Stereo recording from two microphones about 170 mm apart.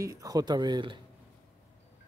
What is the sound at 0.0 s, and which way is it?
Speech, 20° right (ahead or behind).